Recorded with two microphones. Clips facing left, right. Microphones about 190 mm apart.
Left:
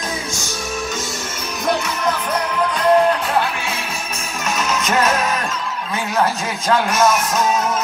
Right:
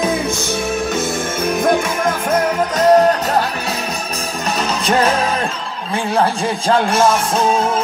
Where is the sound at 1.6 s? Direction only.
50° right (ahead or behind).